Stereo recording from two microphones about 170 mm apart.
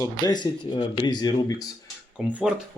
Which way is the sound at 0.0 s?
25° left (ahead or behind).